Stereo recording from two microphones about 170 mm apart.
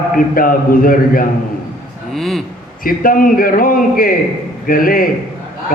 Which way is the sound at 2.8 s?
55° left (ahead or behind).